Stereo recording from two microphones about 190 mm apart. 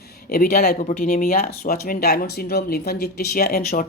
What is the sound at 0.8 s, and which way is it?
Speech, 40° left (ahead or behind).